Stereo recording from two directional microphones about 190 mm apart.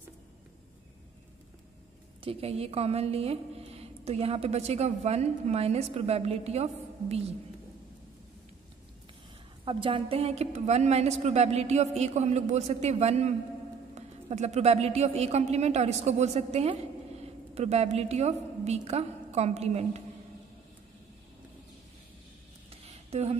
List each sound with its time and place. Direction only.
2.2 s a woman's voice: 30° right (ahead or behind)
9.7 s a woman's voice: 30° right (ahead or behind)
22.7 s a sound: 35° right (ahead or behind)